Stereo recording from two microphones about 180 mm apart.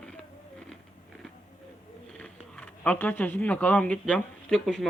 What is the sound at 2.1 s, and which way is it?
Speech, 5° left (ahead or behind).